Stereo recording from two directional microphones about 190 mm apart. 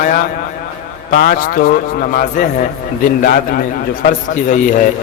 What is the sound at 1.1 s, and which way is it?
A man's voice, 50° left (ahead or behind).